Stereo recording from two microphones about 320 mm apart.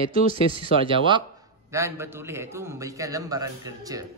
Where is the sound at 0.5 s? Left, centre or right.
Centre.